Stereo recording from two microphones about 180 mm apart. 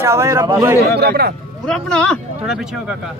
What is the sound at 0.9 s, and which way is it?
Speech, 65° right (ahead or behind).